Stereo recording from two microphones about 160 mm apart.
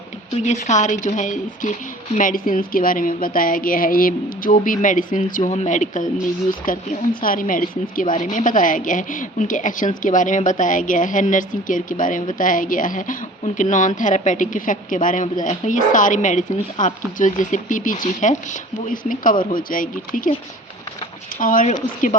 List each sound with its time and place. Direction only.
0.4 s a woman's voice: 45° left (ahead or behind)
21.3 s a woman's voice: 55° left (ahead or behind)